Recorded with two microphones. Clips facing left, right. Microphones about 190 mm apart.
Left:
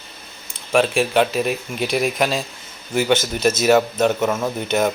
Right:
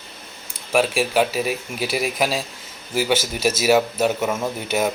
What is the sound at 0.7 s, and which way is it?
A man's voice, 5° right (ahead or behind).